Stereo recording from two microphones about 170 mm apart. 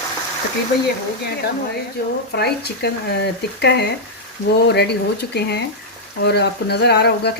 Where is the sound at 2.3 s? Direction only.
70° left (ahead or behind).